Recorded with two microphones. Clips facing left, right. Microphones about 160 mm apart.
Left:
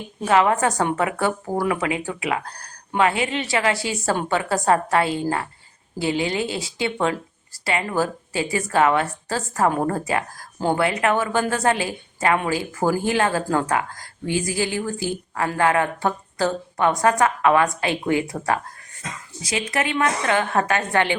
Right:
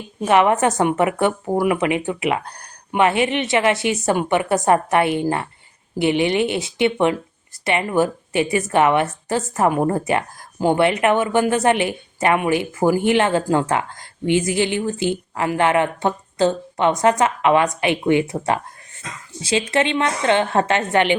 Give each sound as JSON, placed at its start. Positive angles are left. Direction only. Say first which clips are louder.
{"t": 0.3, "sound": "a woman's voice", "louder": "right 3 dB", "side_deg": -20}